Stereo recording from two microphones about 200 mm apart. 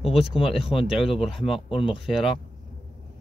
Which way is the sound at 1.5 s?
25° left (ahead or behind).